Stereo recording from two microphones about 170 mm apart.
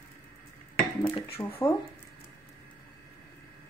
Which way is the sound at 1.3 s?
35° left (ahead or behind).